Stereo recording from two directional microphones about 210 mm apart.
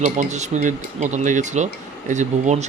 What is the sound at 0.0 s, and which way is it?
Speech, 35° right (ahead or behind).